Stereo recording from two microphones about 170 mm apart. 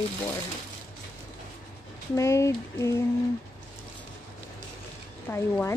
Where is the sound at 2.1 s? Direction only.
15° left (ahead or behind).